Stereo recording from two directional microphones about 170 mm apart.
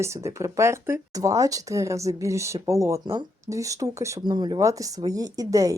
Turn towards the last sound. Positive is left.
turn(degrees=-20)  # may be behind; listen again after turning